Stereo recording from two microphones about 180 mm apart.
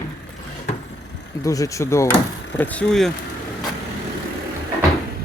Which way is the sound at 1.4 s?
20° left (ahead or behind).